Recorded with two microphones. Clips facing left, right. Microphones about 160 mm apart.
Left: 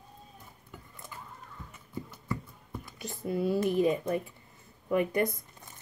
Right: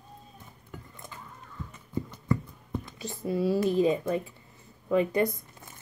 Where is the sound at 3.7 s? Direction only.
25° right (ahead or behind).